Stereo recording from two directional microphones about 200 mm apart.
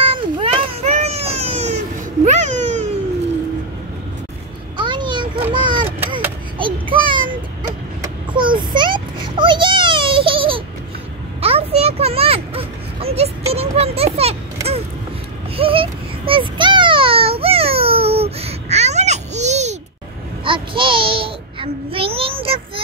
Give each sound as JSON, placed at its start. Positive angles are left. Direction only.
{"t": 0.0, "sound": "children playing", "side_deg": -25}
{"t": 2.2, "sound": "babbling", "side_deg": -35}
{"t": 4.7, "sound": "a sound", "side_deg": -25}
{"t": 20.4, "sound": "child singing", "side_deg": -25}